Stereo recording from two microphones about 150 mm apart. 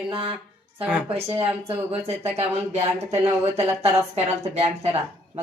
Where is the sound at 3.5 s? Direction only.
45° right (ahead or behind).